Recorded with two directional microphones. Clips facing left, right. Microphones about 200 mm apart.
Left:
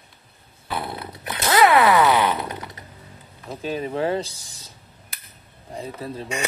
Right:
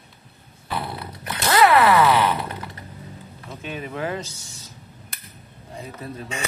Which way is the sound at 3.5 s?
35° left (ahead or behind).